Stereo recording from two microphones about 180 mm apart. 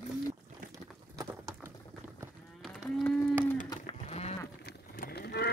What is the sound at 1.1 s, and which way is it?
Clip-clop, 20° right (ahead or behind).